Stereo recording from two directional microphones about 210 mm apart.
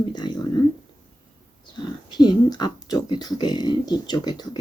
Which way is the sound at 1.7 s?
20° left (ahead or behind).